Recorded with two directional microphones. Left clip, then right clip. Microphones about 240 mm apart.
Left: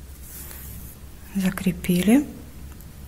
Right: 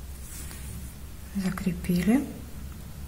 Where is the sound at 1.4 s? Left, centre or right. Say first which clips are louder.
Left 6 dB; left.